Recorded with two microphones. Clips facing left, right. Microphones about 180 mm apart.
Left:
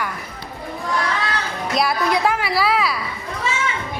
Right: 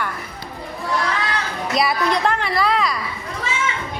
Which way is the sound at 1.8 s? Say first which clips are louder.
Even; 5° left (ahead or behind).